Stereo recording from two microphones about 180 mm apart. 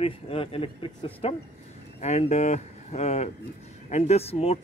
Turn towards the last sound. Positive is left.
turn(degrees=35)  # may be behind; listen again after turning